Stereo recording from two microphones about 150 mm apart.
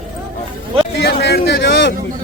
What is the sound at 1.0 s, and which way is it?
Speech, 90° left.